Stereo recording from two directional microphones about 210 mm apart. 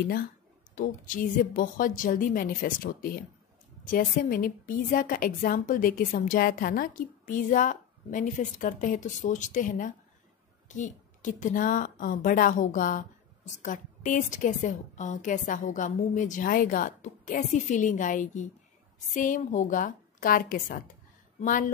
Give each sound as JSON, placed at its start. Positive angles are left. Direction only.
{"t": 0.7, "sound": "a woman's voice", "side_deg": 40}